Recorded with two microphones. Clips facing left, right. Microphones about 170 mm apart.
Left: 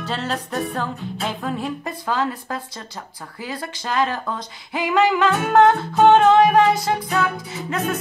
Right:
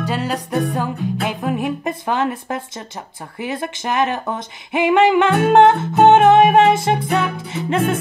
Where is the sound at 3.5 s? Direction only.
20° right (ahead or behind).